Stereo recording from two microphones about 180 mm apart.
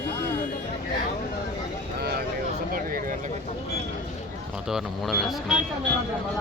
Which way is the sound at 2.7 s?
50° right (ahead or behind).